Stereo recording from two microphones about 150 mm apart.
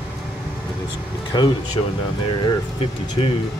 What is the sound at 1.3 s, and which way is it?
Speech, 30° left (ahead or behind).